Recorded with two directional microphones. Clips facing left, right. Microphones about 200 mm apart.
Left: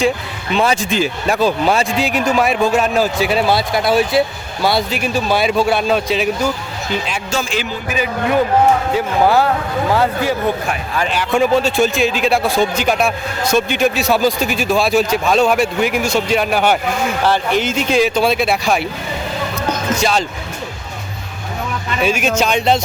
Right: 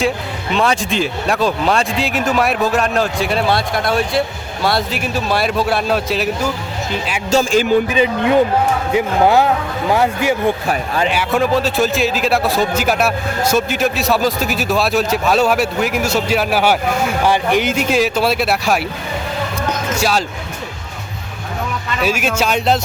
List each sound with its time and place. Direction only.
0.5 s speech: centre (ahead or behind)
7.3 s a man's voice: 45° right (ahead or behind)
7.9 s a man's voice: 25° right (ahead or behind); by 18.9 s 5° right (ahead or behind)
20.0 s speech: 5° right (ahead or behind)
22.0 s speech: 5° right (ahead or behind)